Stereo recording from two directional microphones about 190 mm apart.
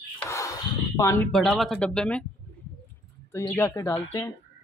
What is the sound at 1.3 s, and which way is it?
Speech, centre (ahead or behind).